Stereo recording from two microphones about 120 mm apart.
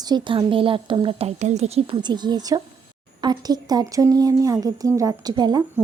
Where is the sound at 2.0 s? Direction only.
40° right (ahead or behind).